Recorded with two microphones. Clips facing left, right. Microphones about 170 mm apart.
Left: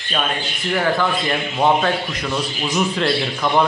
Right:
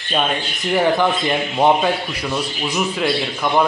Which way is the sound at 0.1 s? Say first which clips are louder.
Right 3 dB; 20° right (ahead or behind).